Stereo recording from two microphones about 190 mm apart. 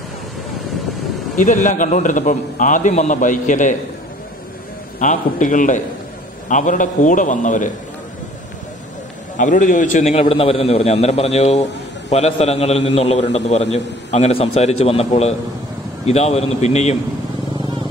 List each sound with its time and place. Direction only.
1.3 s a man's voice: 45° left (ahead or behind)
4.9 s a man's voice: 40° left (ahead or behind)
9.4 s a man's voice: 40° left (ahead or behind)